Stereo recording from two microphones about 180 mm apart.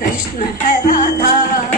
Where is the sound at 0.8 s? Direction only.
50° left (ahead or behind).